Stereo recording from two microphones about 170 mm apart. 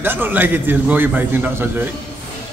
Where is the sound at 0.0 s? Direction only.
10° right (ahead or behind).